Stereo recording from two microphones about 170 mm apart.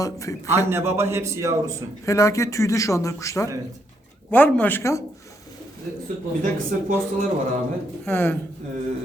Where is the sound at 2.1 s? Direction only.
20° left (ahead or behind).